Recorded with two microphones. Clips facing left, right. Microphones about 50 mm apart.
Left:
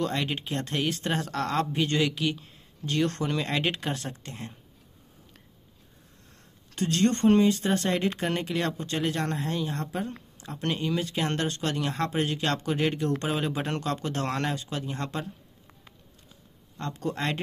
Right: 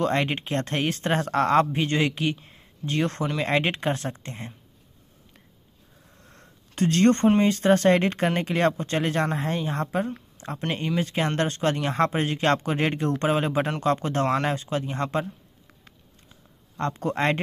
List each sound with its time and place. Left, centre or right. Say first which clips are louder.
0.0 s speech: right 5 dB; right
2.3 s speech: left 1 dB; right
6.2 s a sound: right 4 dB; right
7.3 s speech: right 3 dB; right
14.2 s speech: right 7 dB; centre
14.5 s a man's voice: right 5 dB; right
16.7 s speech: right 5 dB; right